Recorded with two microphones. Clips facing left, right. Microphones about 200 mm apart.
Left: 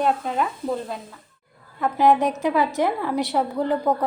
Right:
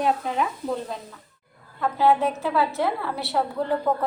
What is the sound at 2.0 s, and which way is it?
Speech, 15° left (ahead or behind).